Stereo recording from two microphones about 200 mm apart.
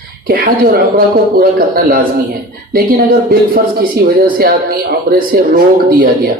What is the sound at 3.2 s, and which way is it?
Speech, 50° right (ahead or behind).